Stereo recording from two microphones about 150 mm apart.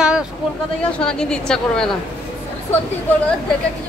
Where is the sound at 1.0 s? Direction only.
5° left (ahead or behind).